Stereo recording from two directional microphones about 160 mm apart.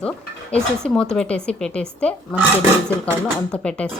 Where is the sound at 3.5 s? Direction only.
5° left (ahead or behind).